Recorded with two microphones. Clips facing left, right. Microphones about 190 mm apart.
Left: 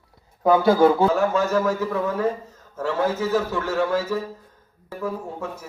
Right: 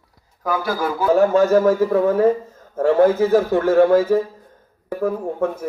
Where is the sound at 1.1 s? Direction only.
45° right (ahead or behind).